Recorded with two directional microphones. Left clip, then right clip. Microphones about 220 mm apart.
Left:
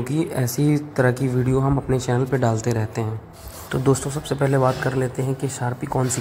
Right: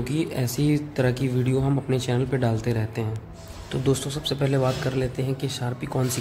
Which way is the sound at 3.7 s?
5° left (ahead or behind).